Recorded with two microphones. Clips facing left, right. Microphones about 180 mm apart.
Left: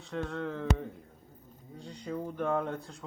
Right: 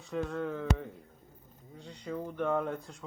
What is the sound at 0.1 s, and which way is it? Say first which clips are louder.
Speech: right 1 dB; 5° right (ahead or behind).